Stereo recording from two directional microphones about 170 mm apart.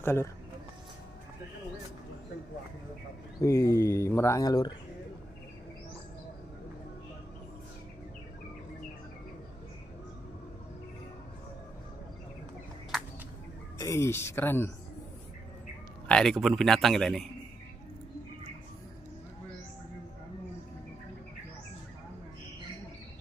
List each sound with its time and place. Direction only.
0.0 s speech: 15° left (ahead or behind)
3.3 s speech: 15° left (ahead or behind)
13.7 s speech: 15° left (ahead or behind)
16.1 s a man's voice: 5° left (ahead or behind)